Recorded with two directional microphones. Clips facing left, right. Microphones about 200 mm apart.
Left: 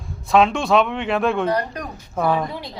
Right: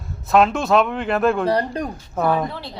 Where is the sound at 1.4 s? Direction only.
30° right (ahead or behind).